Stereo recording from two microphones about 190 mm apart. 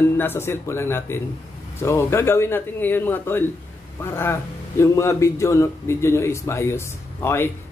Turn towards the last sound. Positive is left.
turn(degrees=10)  # may be behind; listen again after turning